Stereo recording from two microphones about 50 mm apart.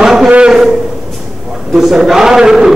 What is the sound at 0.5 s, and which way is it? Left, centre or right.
Speech, centre.